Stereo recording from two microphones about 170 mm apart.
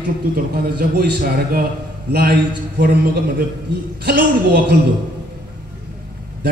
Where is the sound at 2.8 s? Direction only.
80° right.